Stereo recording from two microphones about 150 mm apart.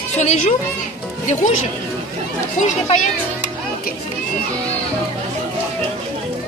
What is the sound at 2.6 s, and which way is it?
Speech, 55° left (ahead or behind).